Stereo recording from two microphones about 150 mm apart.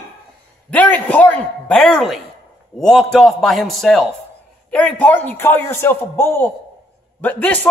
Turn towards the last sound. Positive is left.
turn(degrees=10)  # may be behind; listen again after turning